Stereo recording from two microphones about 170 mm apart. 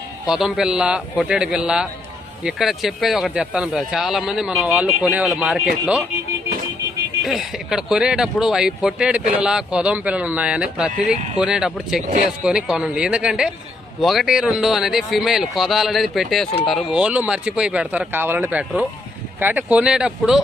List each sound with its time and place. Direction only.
0.3 s speech: 5° right (ahead or behind)
7.3 s speech: centre (ahead or behind)